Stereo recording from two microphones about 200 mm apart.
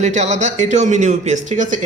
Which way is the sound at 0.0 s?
35° right (ahead or behind).